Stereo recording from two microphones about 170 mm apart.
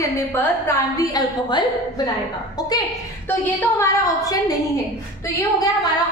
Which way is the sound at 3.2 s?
10° left (ahead or behind).